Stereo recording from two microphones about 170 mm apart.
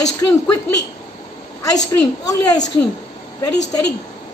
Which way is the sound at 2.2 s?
20° left (ahead or behind).